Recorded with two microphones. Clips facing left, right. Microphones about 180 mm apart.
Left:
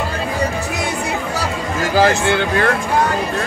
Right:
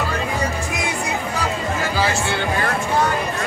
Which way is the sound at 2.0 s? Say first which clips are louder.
Left 10 dB; 50° left (ahead or behind).